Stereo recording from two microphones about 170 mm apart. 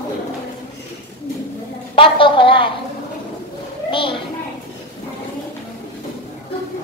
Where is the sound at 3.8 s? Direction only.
30° left (ahead or behind).